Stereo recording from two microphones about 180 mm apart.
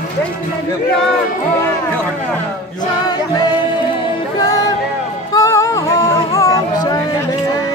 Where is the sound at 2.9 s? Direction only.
25° left (ahead or behind).